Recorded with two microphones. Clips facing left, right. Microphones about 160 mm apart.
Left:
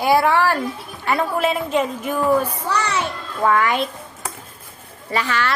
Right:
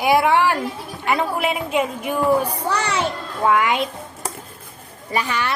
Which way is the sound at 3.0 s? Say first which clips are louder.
Even; 15° right (ahead or behind).